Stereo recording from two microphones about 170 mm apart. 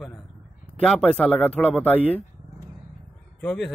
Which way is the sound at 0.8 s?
5° left (ahead or behind).